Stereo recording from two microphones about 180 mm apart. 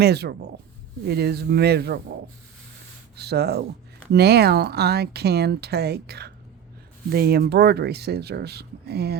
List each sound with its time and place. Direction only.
0.0 s speech: 65° right (ahead or behind)
3.2 s speech: 65° right (ahead or behind)